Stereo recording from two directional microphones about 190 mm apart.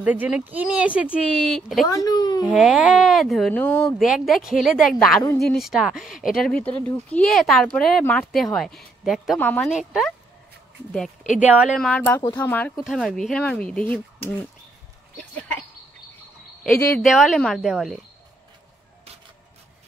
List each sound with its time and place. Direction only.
0.0 s speech: 5° right (ahead or behind)
1.9 s speech: 20° left (ahead or behind)
2.4 s speech: centre (ahead or behind)
11.4 s speech: 5° right (ahead or behind)
16.9 s speech: centre (ahead or behind)